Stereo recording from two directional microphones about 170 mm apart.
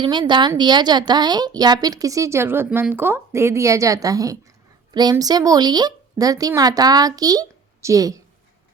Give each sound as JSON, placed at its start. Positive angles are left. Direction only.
{"t": 0.0, "sound": "a woman's voice", "side_deg": -25}